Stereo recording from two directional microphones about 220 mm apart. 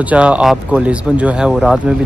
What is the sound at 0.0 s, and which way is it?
Speech, 5° right (ahead or behind).